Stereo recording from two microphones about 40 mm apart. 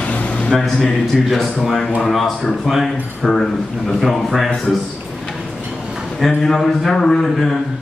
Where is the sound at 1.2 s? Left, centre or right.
Centre.